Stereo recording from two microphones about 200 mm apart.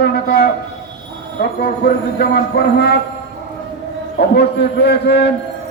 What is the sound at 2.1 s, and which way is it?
Speech, 50° left (ahead or behind).